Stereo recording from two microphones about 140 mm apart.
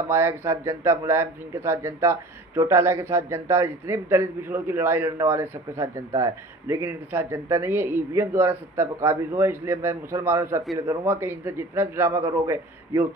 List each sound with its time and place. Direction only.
0.1 s speech: 15° right (ahead or behind)